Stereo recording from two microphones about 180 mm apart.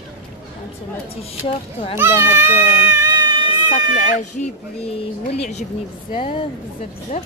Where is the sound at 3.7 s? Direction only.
40° left (ahead or behind).